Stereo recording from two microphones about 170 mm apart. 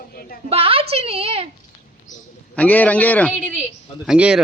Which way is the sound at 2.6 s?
10° left (ahead or behind).